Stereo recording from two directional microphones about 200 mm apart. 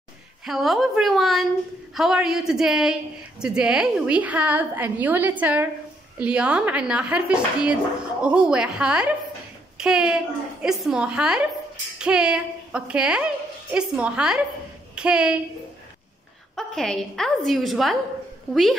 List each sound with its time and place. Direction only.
0.5 s a woman's voice: centre (ahead or behind)
16.5 s a woman's voice: centre (ahead or behind)